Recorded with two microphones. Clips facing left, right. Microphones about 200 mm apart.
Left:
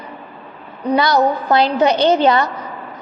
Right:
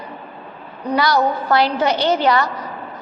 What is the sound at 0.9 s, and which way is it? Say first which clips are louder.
A woman's voice: left 2 dB; 20° left (ahead or behind).